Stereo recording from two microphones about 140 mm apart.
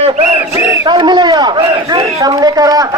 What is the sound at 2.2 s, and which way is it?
Speech, 25° right (ahead or behind).